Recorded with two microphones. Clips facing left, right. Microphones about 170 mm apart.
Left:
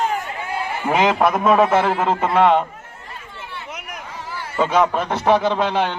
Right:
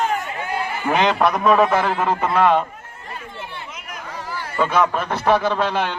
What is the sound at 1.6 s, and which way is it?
A man's voice, 20° left (ahead or behind).